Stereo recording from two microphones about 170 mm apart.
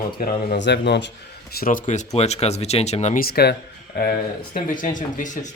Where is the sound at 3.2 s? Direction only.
65° left (ahead or behind).